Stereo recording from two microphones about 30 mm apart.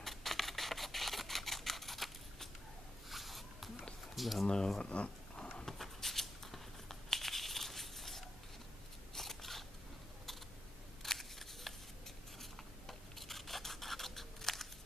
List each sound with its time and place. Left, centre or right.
0.0 s camera: centre
3.1 s a sound: centre
4.1 s speech: centre
4.8 s speech: left
5.7 s a sound: centre
9.1 s scissors: centre
11.0 s scissors: centre
12.4 s rub: centre